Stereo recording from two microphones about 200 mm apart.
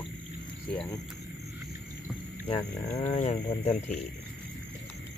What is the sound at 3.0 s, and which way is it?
Speech, 35° left (ahead or behind).